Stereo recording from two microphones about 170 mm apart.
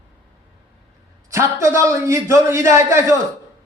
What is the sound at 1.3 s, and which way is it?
A man's voice, 15° right (ahead or behind).